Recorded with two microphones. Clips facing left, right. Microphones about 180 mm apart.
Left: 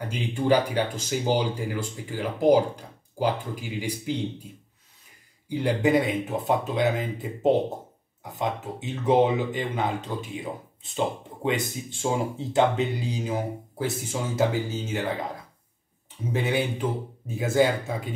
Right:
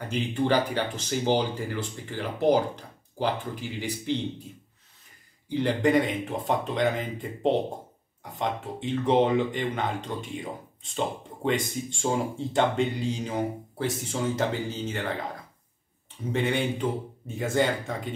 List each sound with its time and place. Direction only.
0.1 s speech: 10° left (ahead or behind)
5.5 s speech: 10° left (ahead or behind)
16.3 s speech: 5° left (ahead or behind)